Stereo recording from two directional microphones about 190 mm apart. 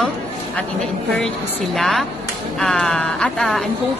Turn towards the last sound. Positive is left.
turn(degrees=0)  # may be behind; listen again after turning